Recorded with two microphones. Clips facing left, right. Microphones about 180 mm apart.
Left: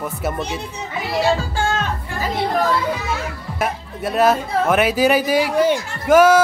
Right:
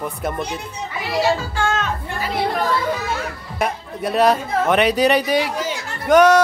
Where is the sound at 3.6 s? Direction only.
Centre (ahead or behind).